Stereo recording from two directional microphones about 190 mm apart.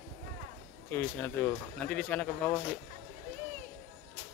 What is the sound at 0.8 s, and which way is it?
Speech, 10° left (ahead or behind).